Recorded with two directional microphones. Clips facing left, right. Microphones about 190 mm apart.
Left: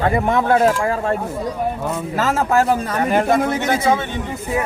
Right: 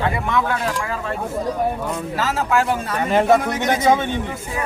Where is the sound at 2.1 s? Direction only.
50° left (ahead or behind).